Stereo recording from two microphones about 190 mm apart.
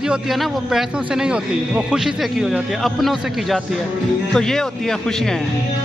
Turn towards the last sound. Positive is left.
turn(degrees=5)  # may be behind; listen again after turning